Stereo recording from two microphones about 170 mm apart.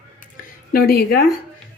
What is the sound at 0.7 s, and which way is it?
Speech, 60° left (ahead or behind).